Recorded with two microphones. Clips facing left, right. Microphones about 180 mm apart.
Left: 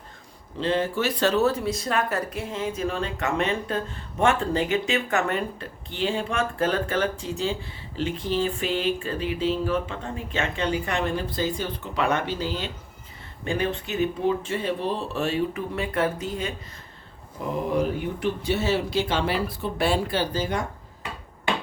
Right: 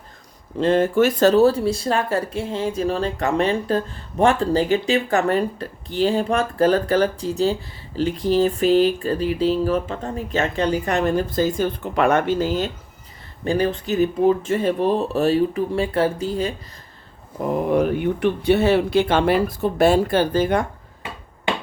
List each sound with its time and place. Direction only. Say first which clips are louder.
0.6 s speech: right 8 dB; 50° right (ahead or behind)
17.5 s speech: right 6 dB; 60° right (ahead or behind)